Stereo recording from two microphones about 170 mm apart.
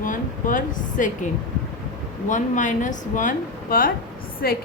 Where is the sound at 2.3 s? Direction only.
50° left (ahead or behind).